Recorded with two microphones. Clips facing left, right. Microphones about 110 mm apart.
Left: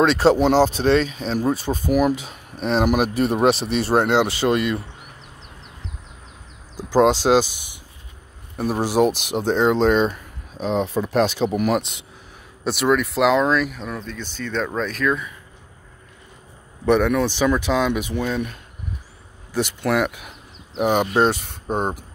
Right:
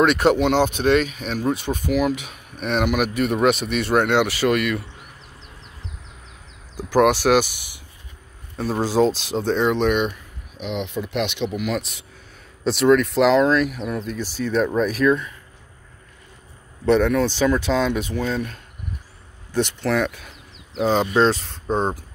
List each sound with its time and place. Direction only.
0.0 s speech: 30° left (ahead or behind)
6.9 s speech: 20° left (ahead or behind)
8.5 s speech: 15° left (ahead or behind); by 11.8 s 40° left (ahead or behind)
12.6 s speech: 5° left (ahead or behind)
16.8 s speech: 15° left (ahead or behind)